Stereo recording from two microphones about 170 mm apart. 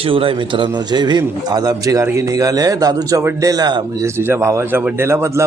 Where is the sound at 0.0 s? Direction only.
30° right (ahead or behind).